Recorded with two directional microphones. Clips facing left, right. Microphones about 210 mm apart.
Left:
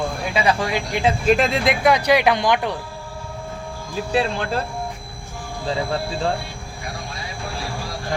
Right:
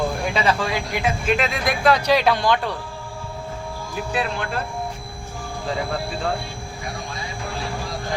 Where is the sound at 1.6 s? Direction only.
20° left (ahead or behind).